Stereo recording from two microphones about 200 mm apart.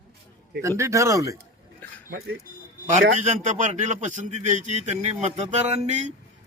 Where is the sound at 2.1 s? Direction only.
55° right (ahead or behind).